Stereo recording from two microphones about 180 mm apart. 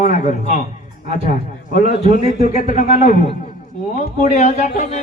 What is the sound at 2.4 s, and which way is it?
A man's voice, 45° left (ahead or behind).